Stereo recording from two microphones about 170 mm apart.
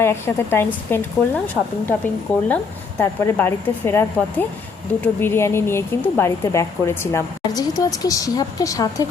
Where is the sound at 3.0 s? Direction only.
15° left (ahead or behind).